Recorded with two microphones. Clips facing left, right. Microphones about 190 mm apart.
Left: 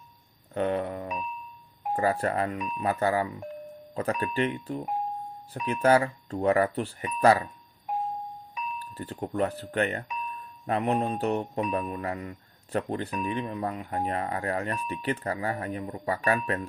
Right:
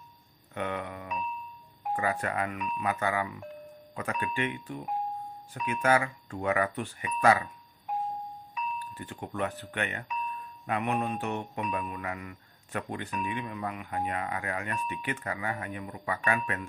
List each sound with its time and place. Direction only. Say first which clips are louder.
0.5 s mantra: left 7 dB; 35° left (ahead or behind)
8.5 s speech: even; 35° left (ahead or behind)
10.7 s mantra: left 4 dB; 35° left (ahead or behind)